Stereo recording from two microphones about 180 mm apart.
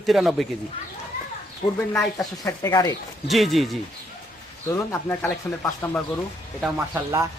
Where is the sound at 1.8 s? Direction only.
15° left (ahead or behind).